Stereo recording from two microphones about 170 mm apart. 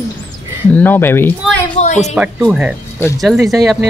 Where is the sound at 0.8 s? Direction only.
10° left (ahead or behind).